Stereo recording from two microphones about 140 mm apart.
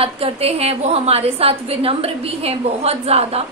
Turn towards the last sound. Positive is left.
turn(degrees=-45)  # may be behind; listen again after turning